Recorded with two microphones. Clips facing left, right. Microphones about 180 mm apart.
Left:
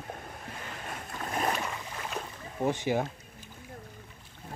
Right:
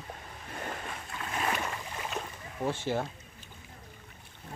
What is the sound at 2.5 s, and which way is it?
Speech, 15° left (ahead or behind).